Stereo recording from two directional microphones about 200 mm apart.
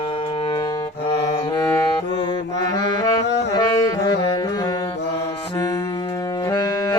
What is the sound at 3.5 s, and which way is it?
Saxophone, 15° left (ahead or behind).